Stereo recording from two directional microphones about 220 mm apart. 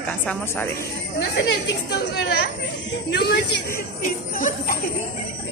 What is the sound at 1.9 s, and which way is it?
Speech, 50° left (ahead or behind).